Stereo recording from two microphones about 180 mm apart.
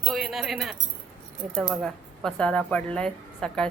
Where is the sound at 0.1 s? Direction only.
Centre (ahead or behind).